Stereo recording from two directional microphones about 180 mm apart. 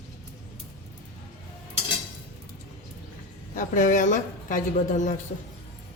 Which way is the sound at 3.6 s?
45° left (ahead or behind).